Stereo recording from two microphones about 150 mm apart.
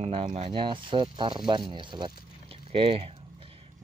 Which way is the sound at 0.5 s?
35° right (ahead or behind).